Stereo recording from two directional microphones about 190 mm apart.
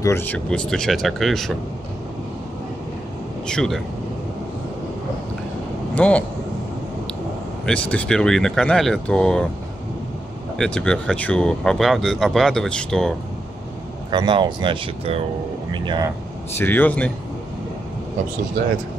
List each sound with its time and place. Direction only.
0.0 s speech: 10° left (ahead or behind)
3.4 s speech: 5° left (ahead or behind)
5.9 s speech: 5° left (ahead or behind)
7.6 s speech: 5° left (ahead or behind)
10.6 s speech: 5° left (ahead or behind)
14.1 s speech: 25° right (ahead or behind)
16.5 s speech: 10° left (ahead or behind)